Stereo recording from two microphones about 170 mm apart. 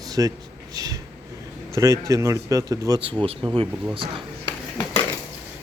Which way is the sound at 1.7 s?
20° right (ahead or behind).